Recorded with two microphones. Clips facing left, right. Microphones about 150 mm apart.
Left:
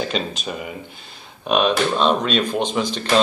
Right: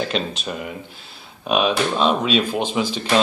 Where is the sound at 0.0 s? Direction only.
Centre (ahead or behind).